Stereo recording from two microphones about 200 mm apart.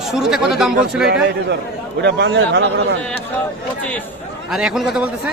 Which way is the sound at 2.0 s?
60° right (ahead or behind).